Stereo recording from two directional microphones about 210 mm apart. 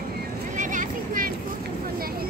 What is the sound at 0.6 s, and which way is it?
Vehicle, 40° right (ahead or behind).